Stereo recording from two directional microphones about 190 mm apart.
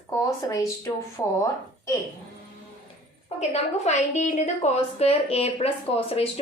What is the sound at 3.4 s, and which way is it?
A woman's voice, 35° left (ahead or behind).